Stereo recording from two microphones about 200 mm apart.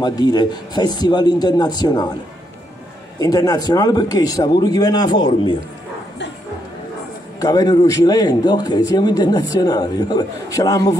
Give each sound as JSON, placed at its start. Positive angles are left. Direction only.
{"t": 0.0, "sound": "a man's voice", "side_deg": 20}
{"t": 3.2, "sound": "a man's voice", "side_deg": 20}
{"t": 7.3, "sound": "a man's voice", "side_deg": 20}